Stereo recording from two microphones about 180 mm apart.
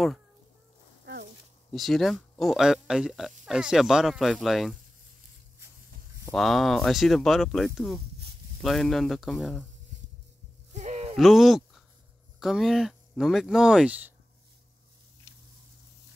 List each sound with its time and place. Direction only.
1.7 s speech: centre (ahead or behind)
6.3 s speech: centre (ahead or behind)
10.7 s a sound: 40° right (ahead or behind)
11.1 s speech: centre (ahead or behind)